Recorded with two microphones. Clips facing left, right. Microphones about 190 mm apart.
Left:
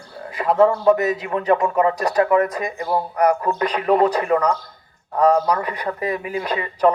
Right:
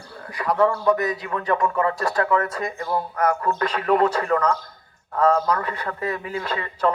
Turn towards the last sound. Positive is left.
turn(degrees=15)  # may be behind; listen again after turning